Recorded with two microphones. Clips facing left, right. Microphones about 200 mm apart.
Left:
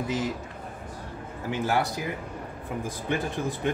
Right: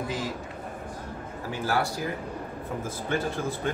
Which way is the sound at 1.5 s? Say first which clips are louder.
Left 2 dB; 20° left (ahead or behind).